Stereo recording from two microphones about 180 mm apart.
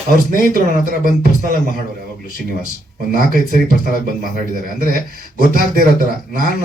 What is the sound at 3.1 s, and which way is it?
Speech, 50° right (ahead or behind).